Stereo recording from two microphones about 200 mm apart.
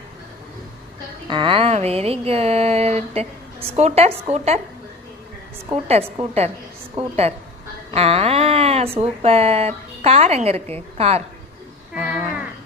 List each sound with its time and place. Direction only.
1.3 s speech: 25° right (ahead or behind)
5.7 s a woman's voice: 30° right (ahead or behind)